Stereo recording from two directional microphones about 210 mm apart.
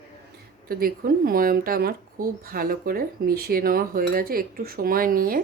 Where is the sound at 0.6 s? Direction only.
45° right (ahead or behind).